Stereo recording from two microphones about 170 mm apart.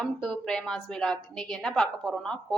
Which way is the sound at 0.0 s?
5° left (ahead or behind).